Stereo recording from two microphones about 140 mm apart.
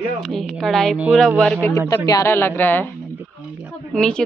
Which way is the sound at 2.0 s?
25° left (ahead or behind).